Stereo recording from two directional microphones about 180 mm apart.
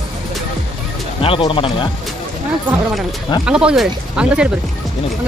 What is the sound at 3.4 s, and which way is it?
Speech, 5° right (ahead or behind).